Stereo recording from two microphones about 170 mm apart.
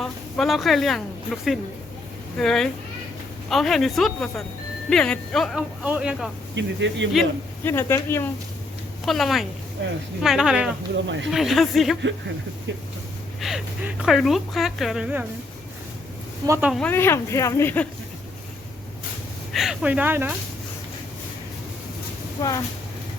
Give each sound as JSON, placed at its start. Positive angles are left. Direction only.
{"t": 0.0, "sound": "a woman's voice", "side_deg": 0}
{"t": 2.4, "sound": "speech", "side_deg": 5}
{"t": 6.6, "sound": "speech", "side_deg": -90}
{"t": 7.6, "sound": "speech", "side_deg": 15}
{"t": 9.0, "sound": "speech", "side_deg": 0}
{"t": 10.9, "sound": "speech", "side_deg": -90}
{"t": 11.3, "sound": "speech", "side_deg": 0}
{"t": 13.4, "sound": "speech", "side_deg": -5}
{"t": 16.5, "sound": "speech", "side_deg": -10}
{"t": 16.7, "sound": "speech", "side_deg": 10}
{"t": 19.5, "sound": "speech", "side_deg": -5}
{"t": 22.4, "sound": "speech", "side_deg": 20}